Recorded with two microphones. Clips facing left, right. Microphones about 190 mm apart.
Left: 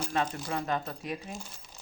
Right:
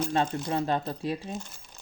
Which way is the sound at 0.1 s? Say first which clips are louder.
Right 4 dB; 30° right (ahead or behind).